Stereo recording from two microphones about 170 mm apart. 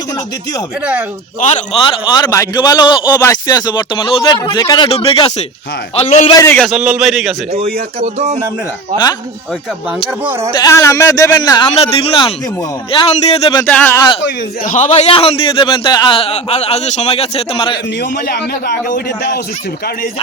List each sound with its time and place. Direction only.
1.5 s a man's voice: 35° left (ahead or behind)
4.9 s a man's voice: 35° left (ahead or behind)
6.3 s speech: 15° left (ahead or behind)
6.6 s a man's voice: 5° right (ahead or behind)
7.5 s speech: 40° right (ahead or behind)
10.6 s a man's voice: 15° left (ahead or behind)
13.7 s speech: 10° left (ahead or behind)
14.6 s a man's voice: 40° left (ahead or behind)
18.0 s a man's voice: 70° left (ahead or behind)